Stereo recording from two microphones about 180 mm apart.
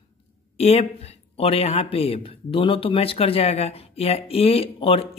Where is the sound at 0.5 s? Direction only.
35° left (ahead or behind).